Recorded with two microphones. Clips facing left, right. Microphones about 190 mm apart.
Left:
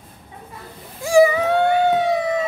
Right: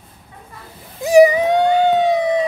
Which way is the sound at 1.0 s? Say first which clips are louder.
Right 4 dB; 20° right (ahead or behind).